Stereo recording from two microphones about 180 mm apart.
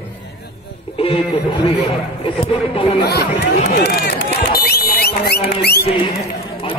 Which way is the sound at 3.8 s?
60° left (ahead or behind).